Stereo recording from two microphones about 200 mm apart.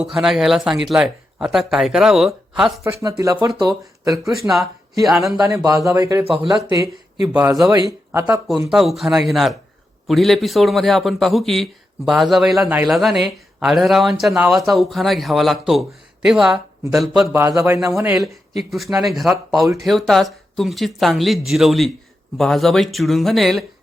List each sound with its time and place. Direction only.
0.0 s a man's voice: 5° right (ahead or behind)
2.8 s speech: 15° right (ahead or behind)
4.1 s a man's voice: centre (ahead or behind)
5.4 s speech: 15° right (ahead or behind)
7.3 s speech: 10° right (ahead or behind)
8.4 s a man's voice: centre (ahead or behind)
17.3 s a man's voice: 15° right (ahead or behind)
19.5 s speech: 15° right (ahead or behind)
19.8 s a man's voice: centre (ahead or behind)